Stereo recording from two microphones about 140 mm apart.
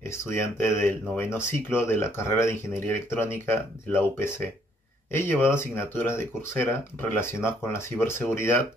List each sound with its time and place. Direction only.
0.1 s speech: 20° left (ahead or behind)